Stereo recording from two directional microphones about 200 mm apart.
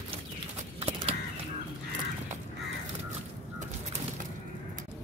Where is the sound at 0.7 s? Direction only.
30° right (ahead or behind).